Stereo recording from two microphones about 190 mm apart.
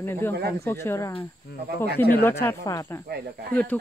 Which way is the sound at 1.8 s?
55° left (ahead or behind).